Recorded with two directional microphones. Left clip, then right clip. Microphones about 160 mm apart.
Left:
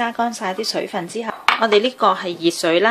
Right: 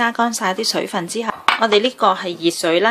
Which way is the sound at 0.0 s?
20° right (ahead or behind).